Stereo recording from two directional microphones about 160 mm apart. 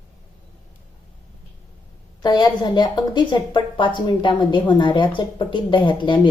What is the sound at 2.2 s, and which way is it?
A woman's voice, 25° left (ahead or behind).